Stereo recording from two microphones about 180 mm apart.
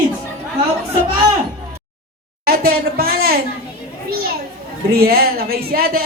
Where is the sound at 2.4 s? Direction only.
55° right (ahead or behind).